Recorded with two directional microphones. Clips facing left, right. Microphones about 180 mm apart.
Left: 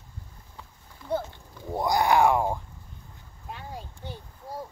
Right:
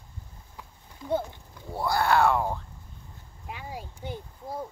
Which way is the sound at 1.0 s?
20° right (ahead or behind).